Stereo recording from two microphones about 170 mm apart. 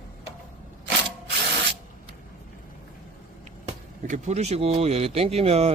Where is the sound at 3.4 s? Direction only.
45° right (ahead or behind).